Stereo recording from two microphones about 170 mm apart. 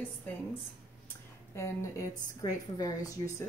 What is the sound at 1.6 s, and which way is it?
A woman's voice, 15° left (ahead or behind).